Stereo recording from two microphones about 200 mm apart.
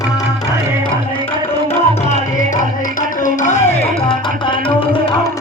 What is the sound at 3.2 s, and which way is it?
Music, 40° left (ahead or behind).